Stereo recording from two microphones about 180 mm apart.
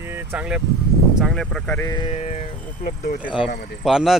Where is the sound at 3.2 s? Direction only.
5° right (ahead or behind).